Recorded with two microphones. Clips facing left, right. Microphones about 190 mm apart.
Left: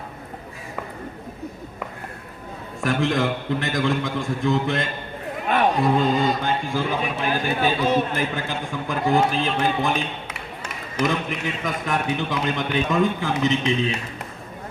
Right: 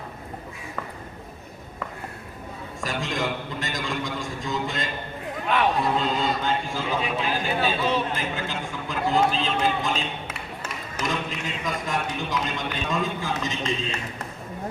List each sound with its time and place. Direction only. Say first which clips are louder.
2.8 s a man's voice: left 7 dB; 60° left (ahead or behind)
5.5 s a man's voice: left 3 dB; 50° left (ahead or behind)
11.0 s a man's voice: left 6 dB; 60° left (ahead or behind)